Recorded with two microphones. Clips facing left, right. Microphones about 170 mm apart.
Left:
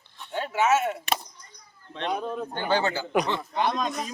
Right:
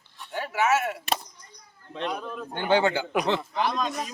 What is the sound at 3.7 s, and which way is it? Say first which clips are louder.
Speech: even; 5° right (ahead or behind).